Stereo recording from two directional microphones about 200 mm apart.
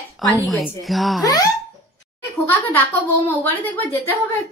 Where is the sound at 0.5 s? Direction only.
Centre (ahead or behind).